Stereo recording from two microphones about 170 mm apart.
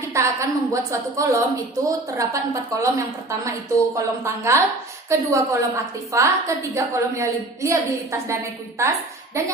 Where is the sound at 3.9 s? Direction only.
15° right (ahead or behind).